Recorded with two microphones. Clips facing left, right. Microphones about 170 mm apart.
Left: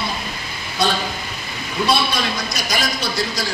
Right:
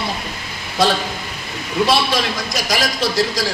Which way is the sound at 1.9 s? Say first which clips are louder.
Even; 90° right.